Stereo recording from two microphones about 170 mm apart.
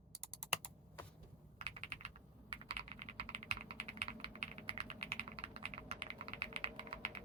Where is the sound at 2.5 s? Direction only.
30° right (ahead or behind).